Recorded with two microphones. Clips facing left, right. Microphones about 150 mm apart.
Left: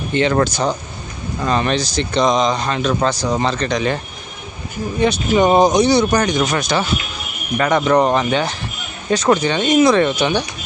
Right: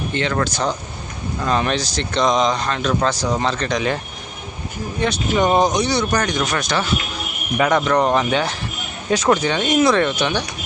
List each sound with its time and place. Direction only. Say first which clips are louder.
0.1 s speech: left 7 dB; 15° left (ahead or behind)
1.4 s speech: left 2 dB; centre (ahead or behind)
7.5 s speech: left 1 dB; 5° right (ahead or behind)
7.9 s speech: left 3 dB; 10° left (ahead or behind)
8.1 s speech: left 1 dB; centre (ahead or behind)